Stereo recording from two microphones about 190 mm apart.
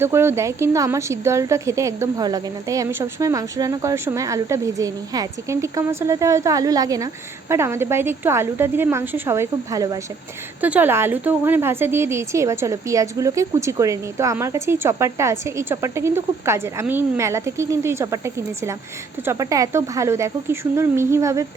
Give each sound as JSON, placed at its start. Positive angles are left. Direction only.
{"t": 0.0, "sound": "a woman's voice", "side_deg": -15}